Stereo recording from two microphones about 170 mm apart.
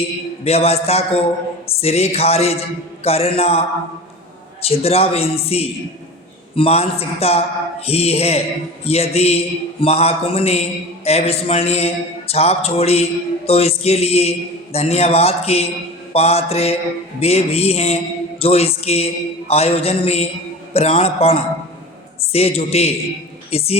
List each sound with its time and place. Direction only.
0.4 s a man's voice: 35° left (ahead or behind)
4.6 s a man's voice: 35° left (ahead or behind)